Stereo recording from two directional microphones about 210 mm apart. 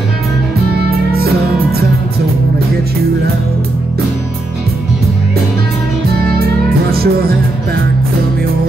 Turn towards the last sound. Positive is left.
turn(degrees=-45)  # may be behind; listen again after turning